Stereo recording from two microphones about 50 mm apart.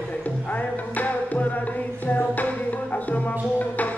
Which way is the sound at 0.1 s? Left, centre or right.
Left.